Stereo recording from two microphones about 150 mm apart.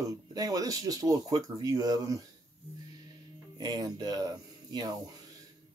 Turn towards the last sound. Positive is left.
turn(degrees=-25)  # may be behind; listen again after turning